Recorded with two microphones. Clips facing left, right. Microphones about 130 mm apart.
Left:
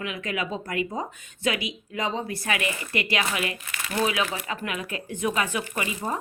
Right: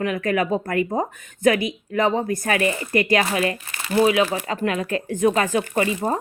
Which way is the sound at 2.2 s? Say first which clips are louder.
Right 7 dB; 45° right (ahead or behind).